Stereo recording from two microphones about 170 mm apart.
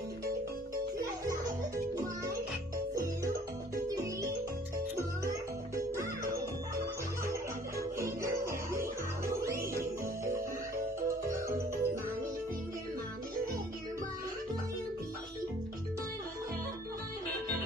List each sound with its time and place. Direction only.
0.9 s music: 20° right (ahead or behind)
3.8 s music: 20° right (ahead or behind)
6.3 s music: 20° right (ahead or behind)
11.2 s music: 15° right (ahead or behind)